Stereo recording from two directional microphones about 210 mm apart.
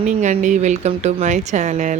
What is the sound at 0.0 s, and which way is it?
Speech, 35° right (ahead or behind).